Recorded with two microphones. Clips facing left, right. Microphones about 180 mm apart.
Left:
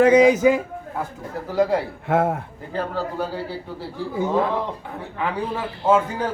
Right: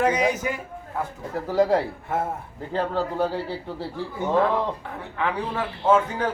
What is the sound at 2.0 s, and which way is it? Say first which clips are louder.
Speech: left 7 dB; 85° left.